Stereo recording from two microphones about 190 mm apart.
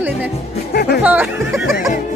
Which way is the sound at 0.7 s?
55° left (ahead or behind).